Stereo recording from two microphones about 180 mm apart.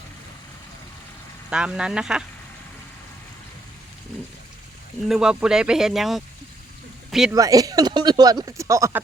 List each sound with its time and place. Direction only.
1.5 s speech: 5° right (ahead or behind)
5.0 s speech: 5° right (ahead or behind)
7.3 s speech: 20° right (ahead or behind)